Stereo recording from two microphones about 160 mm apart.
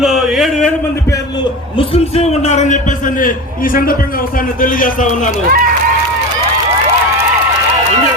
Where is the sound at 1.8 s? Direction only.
40° left (ahead or behind).